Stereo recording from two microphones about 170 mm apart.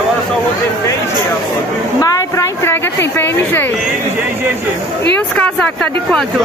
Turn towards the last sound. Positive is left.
turn(degrees=5)  # may be behind; listen again after turning